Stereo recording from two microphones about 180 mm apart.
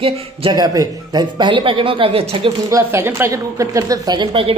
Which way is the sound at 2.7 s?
15° right (ahead or behind).